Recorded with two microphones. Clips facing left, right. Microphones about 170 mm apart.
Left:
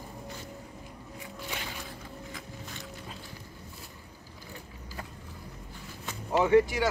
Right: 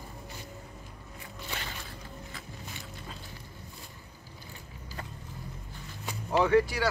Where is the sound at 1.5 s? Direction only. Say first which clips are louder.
Even; 10° left (ahead or behind).